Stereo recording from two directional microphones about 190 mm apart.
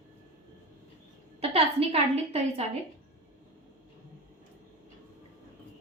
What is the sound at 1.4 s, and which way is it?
A woman's voice, 30° right (ahead or behind).